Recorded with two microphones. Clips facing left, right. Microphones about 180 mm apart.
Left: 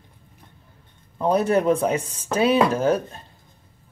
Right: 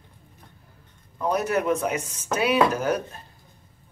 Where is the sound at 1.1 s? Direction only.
30° left (ahead or behind).